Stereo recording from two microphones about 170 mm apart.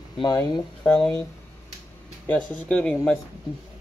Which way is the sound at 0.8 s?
5° left (ahead or behind).